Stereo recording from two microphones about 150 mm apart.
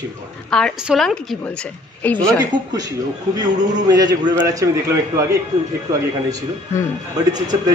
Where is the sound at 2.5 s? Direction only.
30° right (ahead or behind).